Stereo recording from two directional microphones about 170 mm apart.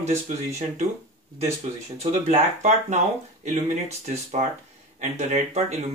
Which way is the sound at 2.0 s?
40° right (ahead or behind).